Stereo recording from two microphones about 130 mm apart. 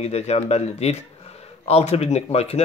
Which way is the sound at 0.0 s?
55° left (ahead or behind).